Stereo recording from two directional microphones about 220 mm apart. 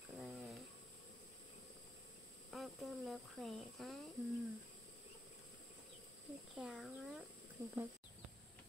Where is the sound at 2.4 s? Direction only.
Centre (ahead or behind).